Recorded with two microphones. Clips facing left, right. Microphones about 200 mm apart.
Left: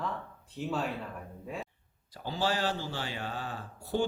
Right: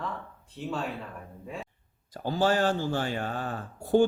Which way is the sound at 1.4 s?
Centre (ahead or behind).